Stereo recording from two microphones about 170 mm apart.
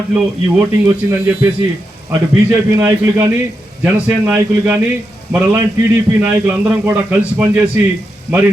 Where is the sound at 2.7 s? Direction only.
15° right (ahead or behind).